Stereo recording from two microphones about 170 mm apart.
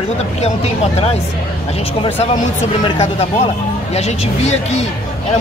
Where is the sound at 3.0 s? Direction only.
40° left (ahead or behind).